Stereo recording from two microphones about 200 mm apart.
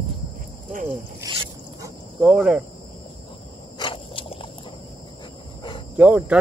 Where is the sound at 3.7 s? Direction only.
25° left (ahead or behind).